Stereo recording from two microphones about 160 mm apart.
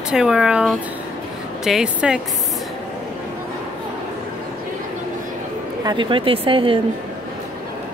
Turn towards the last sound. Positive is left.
turn(degrees=-35)  # may be behind; listen again after turning